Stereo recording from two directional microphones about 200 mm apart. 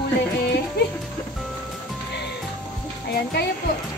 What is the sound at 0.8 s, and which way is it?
Music, 55° left (ahead or behind).